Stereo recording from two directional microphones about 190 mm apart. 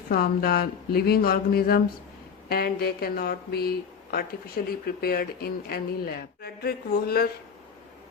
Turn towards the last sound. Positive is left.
turn(degrees=55)  # may be behind; listen again after turning